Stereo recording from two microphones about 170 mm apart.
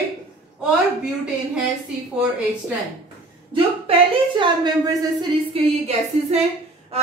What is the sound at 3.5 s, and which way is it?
Speech, 30° right (ahead or behind).